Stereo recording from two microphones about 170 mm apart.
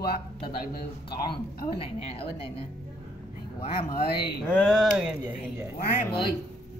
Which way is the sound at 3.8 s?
65° left (ahead or behind).